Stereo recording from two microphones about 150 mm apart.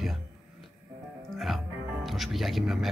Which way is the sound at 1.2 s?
Centre (ahead or behind).